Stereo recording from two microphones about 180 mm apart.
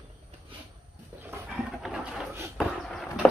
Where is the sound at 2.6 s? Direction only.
Centre (ahead or behind).